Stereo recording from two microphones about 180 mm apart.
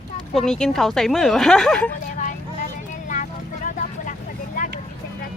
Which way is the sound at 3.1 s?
45° left (ahead or behind).